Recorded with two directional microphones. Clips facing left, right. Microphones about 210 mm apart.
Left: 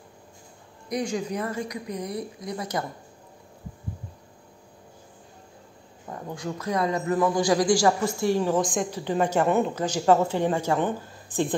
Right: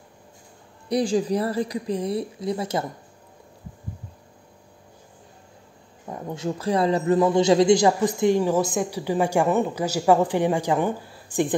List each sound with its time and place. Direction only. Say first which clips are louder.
0.8 s a woman's voice: right 6 dB; 30° right (ahead or behind)
6.0 s a man's voice: right 4 dB; 20° right (ahead or behind)